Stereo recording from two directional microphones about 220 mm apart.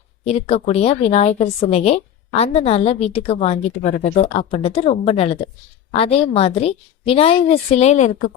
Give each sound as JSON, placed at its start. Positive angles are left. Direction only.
{"t": 0.3, "sound": "a woman's voice", "side_deg": 25}